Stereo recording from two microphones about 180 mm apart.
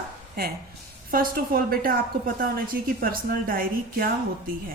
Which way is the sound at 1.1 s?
55° right (ahead or behind).